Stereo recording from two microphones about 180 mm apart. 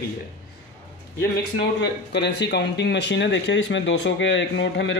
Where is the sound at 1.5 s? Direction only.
70° left (ahead or behind); by 5.0 s 85° left.